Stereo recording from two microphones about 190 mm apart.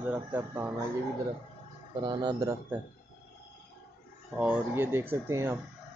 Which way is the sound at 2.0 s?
20° right (ahead or behind).